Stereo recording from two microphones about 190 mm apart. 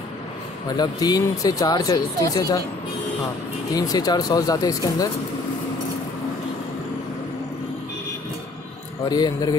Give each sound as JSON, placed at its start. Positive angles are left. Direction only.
{"t": 0.7, "sound": "speech", "side_deg": 20}
{"t": 3.7, "sound": "speech", "side_deg": 20}
{"t": 9.1, "sound": "speech", "side_deg": 20}